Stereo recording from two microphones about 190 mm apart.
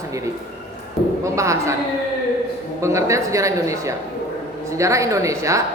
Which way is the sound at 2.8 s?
15° right (ahead or behind).